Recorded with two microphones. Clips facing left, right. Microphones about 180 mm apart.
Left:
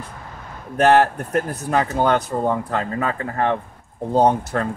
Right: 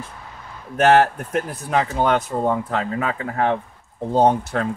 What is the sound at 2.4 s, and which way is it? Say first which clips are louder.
Speech: even; centre (ahead or behind).